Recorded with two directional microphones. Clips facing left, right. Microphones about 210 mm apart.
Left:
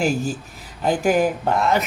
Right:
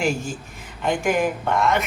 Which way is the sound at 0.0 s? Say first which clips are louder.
Left 3 dB; 40° left (ahead or behind).